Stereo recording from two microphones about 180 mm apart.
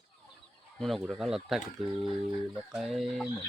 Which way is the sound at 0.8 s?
Centre (ahead or behind).